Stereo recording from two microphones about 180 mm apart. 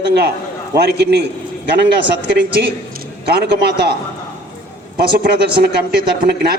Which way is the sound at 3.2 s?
65° right (ahead or behind).